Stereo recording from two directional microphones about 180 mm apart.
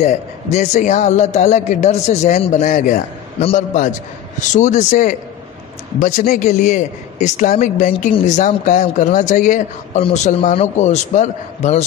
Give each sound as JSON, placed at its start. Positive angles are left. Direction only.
{"t": 0.0, "sound": "a man's voice", "side_deg": 40}